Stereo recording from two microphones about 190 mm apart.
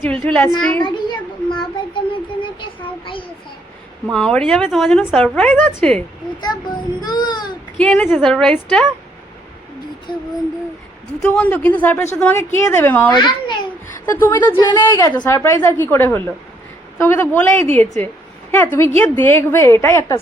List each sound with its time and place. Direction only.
0.0 s a woman's voice: 10° left (ahead or behind)
0.9 s a child's voice: 25° left (ahead or behind)
4.1 s a woman's voice: 5° left (ahead or behind)
6.4 s a child's voice: 20° left (ahead or behind)
7.8 s a woman's voice: 5° left (ahead or behind)
10.1 s a woman's voice: 25° left (ahead or behind)
11.2 s a woman's voice: 5° left (ahead or behind)
13.1 s a woman's voice: 25° left (ahead or behind)
14.0 s a woman's voice: 10° left (ahead or behind)
14.5 s a woman's voice: 25° left (ahead or behind)
18.5 s a woman's voice: 10° left (ahead or behind)